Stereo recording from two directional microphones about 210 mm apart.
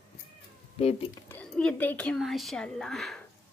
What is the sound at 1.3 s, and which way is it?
Speech, 5° left (ahead or behind).